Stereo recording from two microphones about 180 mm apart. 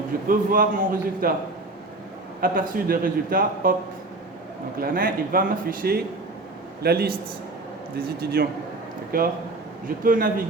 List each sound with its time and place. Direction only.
0.3 s a man's voice: 50° right (ahead or behind)
2.4 s a man's voice: 55° right (ahead or behind)
4.8 s a man's voice: 50° right (ahead or behind)